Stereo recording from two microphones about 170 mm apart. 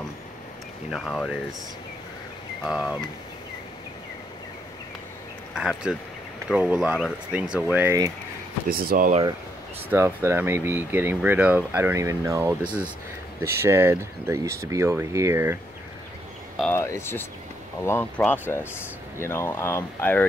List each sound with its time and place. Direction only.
0.8 s speech: centre (ahead or behind)
2.6 s speech: 5° right (ahead or behind)
5.5 s speech: 5° right (ahead or behind)
8.6 s speech: 60° right (ahead or behind)
9.8 s speech: 15° right (ahead or behind)
16.7 s speech: 15° left (ahead or behind)